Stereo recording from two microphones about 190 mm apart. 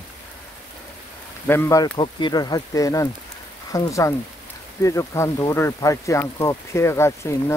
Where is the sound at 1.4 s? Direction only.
15° left (ahead or behind).